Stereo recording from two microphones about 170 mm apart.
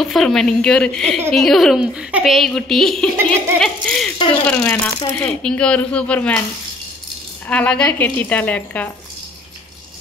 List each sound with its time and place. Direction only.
0.0 s a woman's voice: centre (ahead or behind)
4.6 s speech: 20° left (ahead or behind)
5.1 s speech: 5° left (ahead or behind)
7.4 s speech: 5° left (ahead or behind)